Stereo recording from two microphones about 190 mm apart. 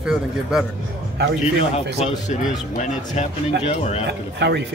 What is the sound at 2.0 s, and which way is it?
Speech, 35° left (ahead or behind).